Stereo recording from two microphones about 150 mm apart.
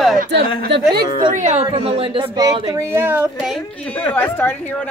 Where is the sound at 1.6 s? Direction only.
40° right (ahead or behind); by 3.3 s 15° right (ahead or behind).